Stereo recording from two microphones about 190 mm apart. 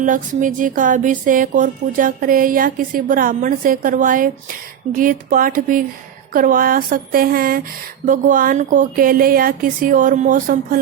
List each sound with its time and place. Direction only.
0.0 s music: 45° right (ahead or behind)